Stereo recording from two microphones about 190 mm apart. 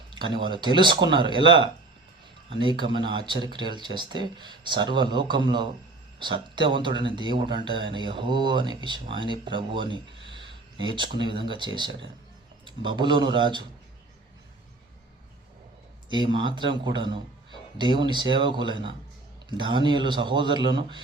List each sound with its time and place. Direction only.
0.1 s speech: 25° right (ahead or behind)
16.0 s speech: 25° right (ahead or behind)